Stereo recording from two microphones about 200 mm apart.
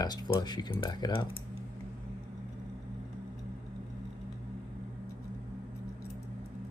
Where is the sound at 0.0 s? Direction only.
20° left (ahead or behind).